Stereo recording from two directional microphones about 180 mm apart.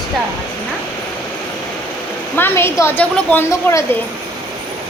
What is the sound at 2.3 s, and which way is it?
A woman's voice, 10° left (ahead or behind).